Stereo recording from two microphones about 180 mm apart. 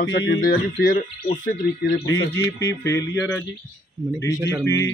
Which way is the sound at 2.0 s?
85° left.